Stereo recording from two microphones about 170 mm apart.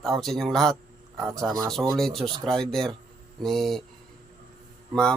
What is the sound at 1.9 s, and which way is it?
Speech, centre (ahead or behind).